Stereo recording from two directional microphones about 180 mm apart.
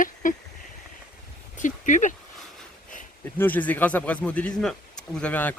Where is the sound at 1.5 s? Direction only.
45° left (ahead or behind).